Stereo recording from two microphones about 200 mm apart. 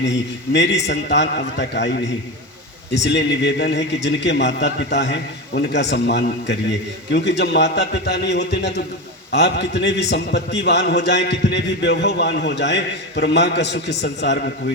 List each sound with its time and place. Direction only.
0.5 s a man's voice: 60° left (ahead or behind)